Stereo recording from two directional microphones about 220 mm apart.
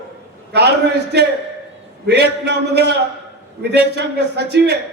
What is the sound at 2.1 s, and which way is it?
A man's voice, 50° right (ahead or behind).